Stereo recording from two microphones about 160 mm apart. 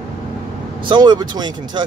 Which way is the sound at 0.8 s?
30° right (ahead or behind).